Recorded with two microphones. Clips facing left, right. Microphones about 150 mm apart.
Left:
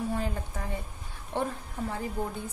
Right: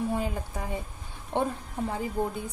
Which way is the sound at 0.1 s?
15° right (ahead or behind).